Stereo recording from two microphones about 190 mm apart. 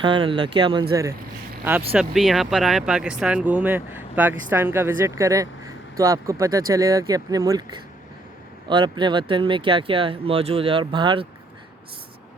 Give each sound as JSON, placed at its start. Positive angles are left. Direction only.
{"t": 0.0, "sound": "speech", "side_deg": -25}
{"t": 1.9, "sound": "speech", "side_deg": -5}